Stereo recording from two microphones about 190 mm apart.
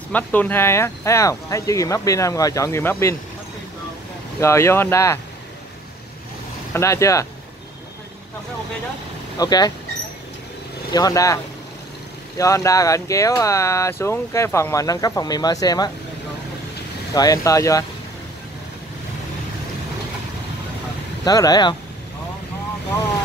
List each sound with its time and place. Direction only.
0.1 s speech: 10° left (ahead or behind)
4.4 s speech: 15° left (ahead or behind)
6.7 s speech: 15° left (ahead or behind)
9.4 s speech: 20° left (ahead or behind)
10.9 s speech: 20° left (ahead or behind)
12.4 s speech: 15° left (ahead or behind)
17.1 s speech: 20° left (ahead or behind)
21.2 s speech: 20° left (ahead or behind)